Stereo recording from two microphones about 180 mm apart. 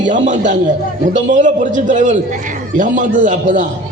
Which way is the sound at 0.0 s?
45° right (ahead or behind).